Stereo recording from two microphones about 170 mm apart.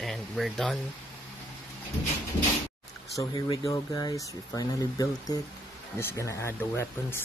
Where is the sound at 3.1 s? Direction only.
20° left (ahead or behind).